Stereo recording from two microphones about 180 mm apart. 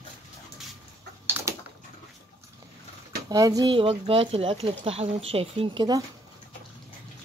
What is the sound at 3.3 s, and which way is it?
Speech, 20° right (ahead or behind).